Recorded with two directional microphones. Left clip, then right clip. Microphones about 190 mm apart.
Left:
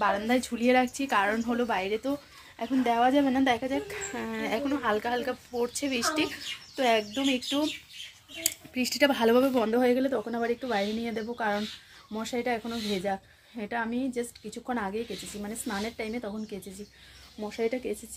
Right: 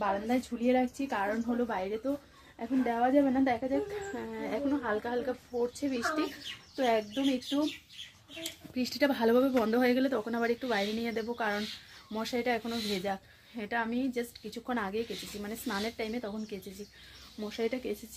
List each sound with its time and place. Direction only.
0.0 s speech: 20° left (ahead or behind); by 17.9 s centre (ahead or behind)